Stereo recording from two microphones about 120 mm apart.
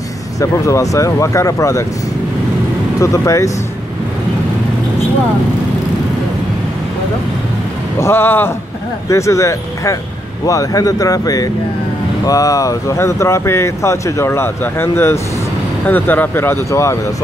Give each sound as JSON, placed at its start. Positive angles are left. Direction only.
{"t": 0.4, "sound": "speech", "side_deg": 25}
{"t": 3.0, "sound": "speech", "side_deg": 25}
{"t": 8.0, "sound": "speech", "side_deg": 20}